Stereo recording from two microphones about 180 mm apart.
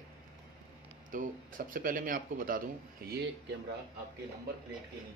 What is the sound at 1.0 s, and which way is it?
Speech, 45° right (ahead or behind).